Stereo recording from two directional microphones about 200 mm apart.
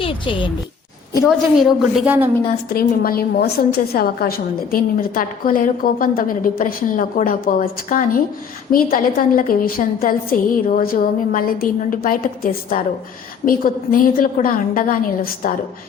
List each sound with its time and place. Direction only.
0.0 s speech: 25° left (ahead or behind)
1.3 s a woman's voice: centre (ahead or behind)
2.7 s a woman's voice: 50° left (ahead or behind)